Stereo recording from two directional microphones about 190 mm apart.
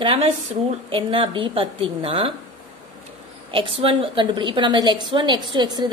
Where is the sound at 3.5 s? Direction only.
30° right (ahead or behind).